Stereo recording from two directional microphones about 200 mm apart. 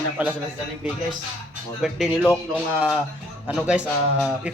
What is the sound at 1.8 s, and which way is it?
Speech, centre (ahead or behind).